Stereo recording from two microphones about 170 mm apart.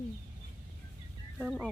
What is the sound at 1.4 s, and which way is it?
Speech, 5° right (ahead or behind).